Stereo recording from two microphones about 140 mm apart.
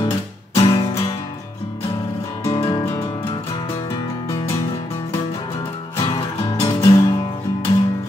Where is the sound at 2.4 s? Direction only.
30° left (ahead or behind).